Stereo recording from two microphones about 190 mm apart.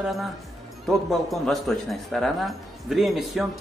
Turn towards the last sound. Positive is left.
turn(degrees=0)  # may be behind; listen again after turning